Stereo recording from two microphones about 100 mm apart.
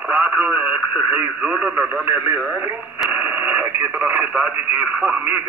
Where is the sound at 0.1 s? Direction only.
15° right (ahead or behind).